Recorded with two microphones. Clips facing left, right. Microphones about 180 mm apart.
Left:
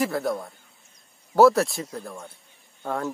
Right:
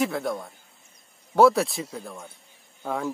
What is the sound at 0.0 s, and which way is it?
Speech, centre (ahead or behind).